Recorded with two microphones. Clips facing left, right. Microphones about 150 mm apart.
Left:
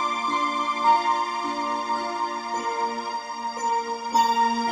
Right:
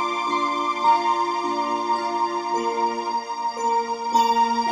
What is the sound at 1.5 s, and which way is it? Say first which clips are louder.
Music: right 4 dB; 20° right (ahead or behind).